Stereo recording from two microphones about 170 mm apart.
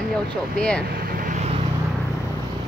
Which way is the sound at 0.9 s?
60° right (ahead or behind).